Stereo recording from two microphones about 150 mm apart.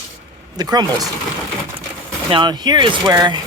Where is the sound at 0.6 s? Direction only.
25° right (ahead or behind).